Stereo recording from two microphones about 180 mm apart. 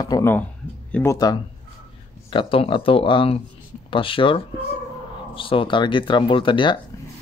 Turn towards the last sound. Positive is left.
turn(degrees=25)  # may be behind; listen again after turning